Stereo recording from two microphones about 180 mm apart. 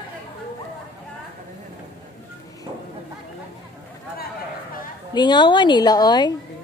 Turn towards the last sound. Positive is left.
turn(degrees=25)  # may be behind; listen again after turning